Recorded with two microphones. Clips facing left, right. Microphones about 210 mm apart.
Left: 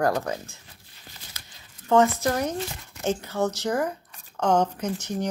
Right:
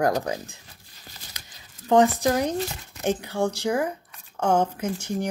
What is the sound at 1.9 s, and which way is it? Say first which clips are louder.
A woman's voice: right 2 dB; 15° right (ahead or behind).